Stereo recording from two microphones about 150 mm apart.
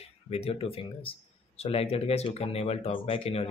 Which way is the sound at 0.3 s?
40° left (ahead or behind).